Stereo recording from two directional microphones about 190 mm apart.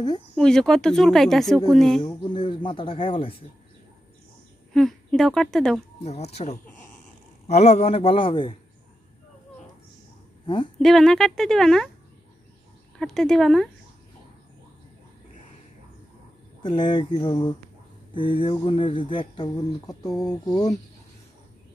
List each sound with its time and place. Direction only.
0.4 s speech: 5° left (ahead or behind)
2.0 s speech: 25° left (ahead or behind)
4.7 s speech: centre (ahead or behind)
6.0 s speech: 35° left (ahead or behind)
10.4 s a woman's voice: 25° left (ahead or behind)
10.8 s speech: centre (ahead or behind)
13.0 s speech: 5° left (ahead or behind)
16.6 s speech: 25° left (ahead or behind)